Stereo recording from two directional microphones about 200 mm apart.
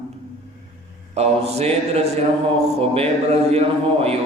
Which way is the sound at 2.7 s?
30° right (ahead or behind).